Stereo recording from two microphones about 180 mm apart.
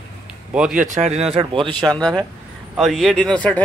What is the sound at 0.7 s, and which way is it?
Speech, 40° right (ahead or behind).